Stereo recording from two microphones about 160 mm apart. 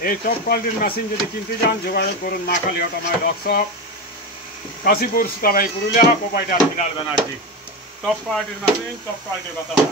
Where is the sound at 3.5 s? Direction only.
90° left.